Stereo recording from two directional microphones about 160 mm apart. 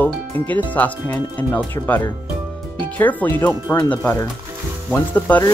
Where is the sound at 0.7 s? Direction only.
10° left (ahead or behind).